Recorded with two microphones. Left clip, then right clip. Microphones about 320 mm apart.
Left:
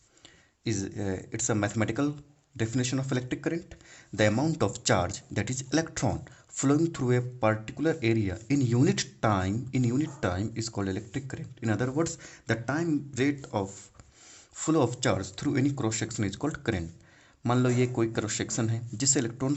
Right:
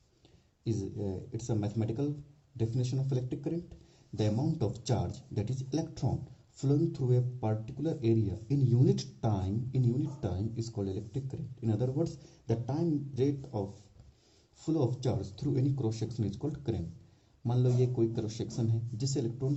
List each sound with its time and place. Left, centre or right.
0.6 s speech: left
14.5 s speech: left